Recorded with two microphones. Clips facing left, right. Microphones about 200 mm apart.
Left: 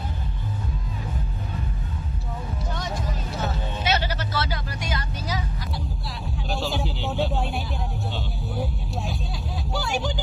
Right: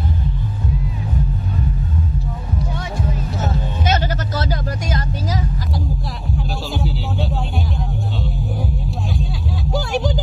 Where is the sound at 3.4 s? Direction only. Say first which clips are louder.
Right 4 dB; 45° right (ahead or behind).